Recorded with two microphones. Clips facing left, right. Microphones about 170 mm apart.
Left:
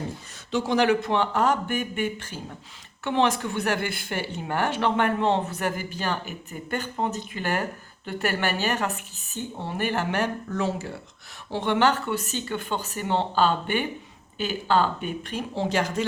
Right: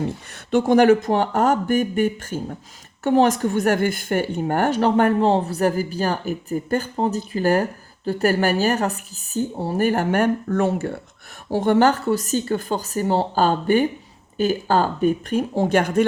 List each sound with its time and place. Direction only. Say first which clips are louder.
0.5 s speech: right 7 dB; 50° right (ahead or behind)
11.5 s speech: right 6 dB; 40° right (ahead or behind)